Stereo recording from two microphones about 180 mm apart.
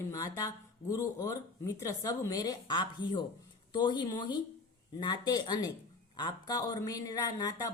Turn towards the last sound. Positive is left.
turn(degrees=20)  # may be behind; listen again after turning